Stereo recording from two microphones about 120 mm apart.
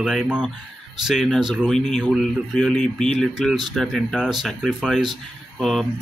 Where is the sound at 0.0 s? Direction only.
5° right (ahead or behind).